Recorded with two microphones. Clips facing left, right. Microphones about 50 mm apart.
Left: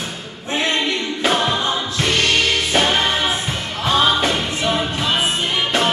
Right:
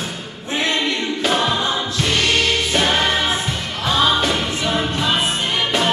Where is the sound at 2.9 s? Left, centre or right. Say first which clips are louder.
Even; centre.